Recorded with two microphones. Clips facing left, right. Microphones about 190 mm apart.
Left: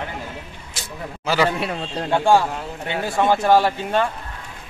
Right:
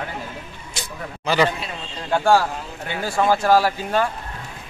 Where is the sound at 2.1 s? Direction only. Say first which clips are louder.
Left 1 dB; 20° left (ahead or behind).